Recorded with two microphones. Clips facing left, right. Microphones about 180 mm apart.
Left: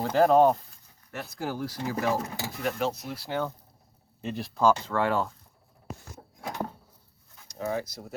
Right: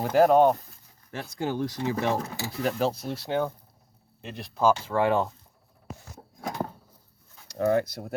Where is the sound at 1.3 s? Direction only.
20° right (ahead or behind).